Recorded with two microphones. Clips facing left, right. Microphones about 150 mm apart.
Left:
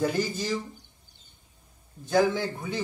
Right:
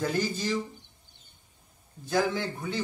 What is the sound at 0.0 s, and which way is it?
Speech, 10° left (ahead or behind).